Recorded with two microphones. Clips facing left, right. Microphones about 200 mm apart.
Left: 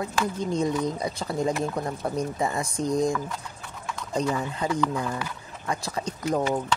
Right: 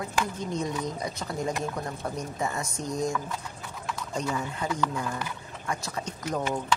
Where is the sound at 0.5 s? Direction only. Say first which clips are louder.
Left 5 dB; 30° left (ahead or behind).